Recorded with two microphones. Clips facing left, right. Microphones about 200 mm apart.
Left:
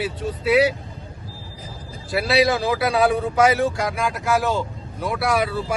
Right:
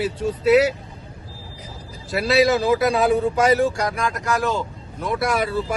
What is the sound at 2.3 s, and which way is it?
Speech, 45° right (ahead or behind).